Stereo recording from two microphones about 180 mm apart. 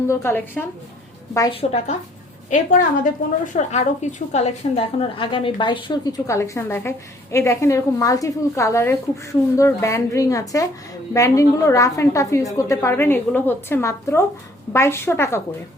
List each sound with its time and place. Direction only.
0.1 s a woman's voice: 15° left (ahead or behind)
1.5 s a woman's voice: 35° left (ahead or behind)
2.5 s a woman's voice: 45° left (ahead or behind); by 15.4 s 15° left (ahead or behind)